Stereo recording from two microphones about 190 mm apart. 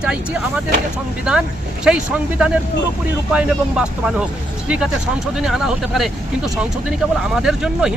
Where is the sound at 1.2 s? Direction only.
5° right (ahead or behind).